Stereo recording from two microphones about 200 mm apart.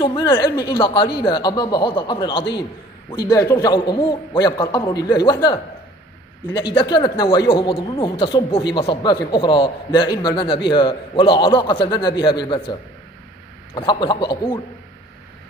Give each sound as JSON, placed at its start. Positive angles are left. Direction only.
{"t": 0.0, "sound": "a man's voice", "side_deg": 20}
{"t": 13.7, "sound": "a man's voice", "side_deg": 20}